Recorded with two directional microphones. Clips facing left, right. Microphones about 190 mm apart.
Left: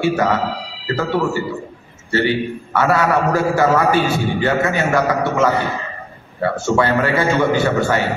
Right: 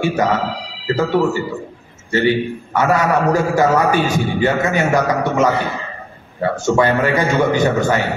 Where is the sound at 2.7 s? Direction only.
15° right (ahead or behind).